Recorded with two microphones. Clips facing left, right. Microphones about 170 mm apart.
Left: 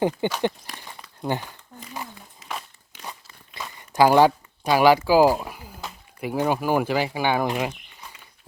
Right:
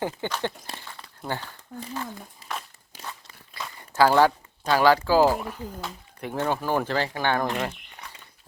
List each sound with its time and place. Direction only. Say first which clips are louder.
0.0 s speech: left 6 dB; 15° left (ahead or behind)
0.8 s crumpling: left 5 dB; 15° left (ahead or behind)
2.4 s walk: left 1 dB; 35° right (ahead or behind)
3.6 s speech: left 2 dB; 15° left (ahead or behind)